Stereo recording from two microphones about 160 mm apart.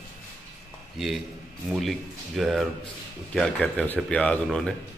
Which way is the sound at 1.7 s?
Centre (ahead or behind).